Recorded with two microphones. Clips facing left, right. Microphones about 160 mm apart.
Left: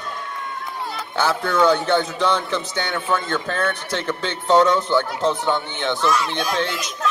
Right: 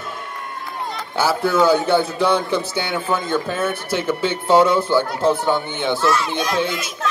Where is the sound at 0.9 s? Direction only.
5° right (ahead or behind).